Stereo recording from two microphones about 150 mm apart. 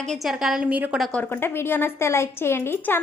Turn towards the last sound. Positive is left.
turn(degrees=15)  # may be behind; listen again after turning